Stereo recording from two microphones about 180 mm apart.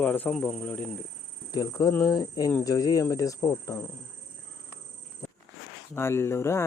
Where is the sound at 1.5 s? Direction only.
20° left (ahead or behind).